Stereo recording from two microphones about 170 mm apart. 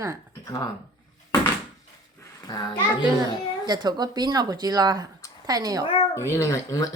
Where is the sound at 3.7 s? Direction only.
25° right (ahead or behind).